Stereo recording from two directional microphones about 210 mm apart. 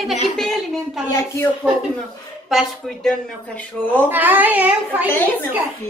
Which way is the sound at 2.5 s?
Centre (ahead or behind).